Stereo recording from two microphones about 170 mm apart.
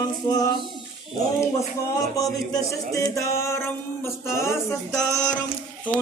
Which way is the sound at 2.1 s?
20° left (ahead or behind).